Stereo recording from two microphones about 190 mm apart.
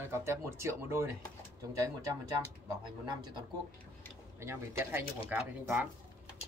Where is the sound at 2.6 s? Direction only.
20° right (ahead or behind).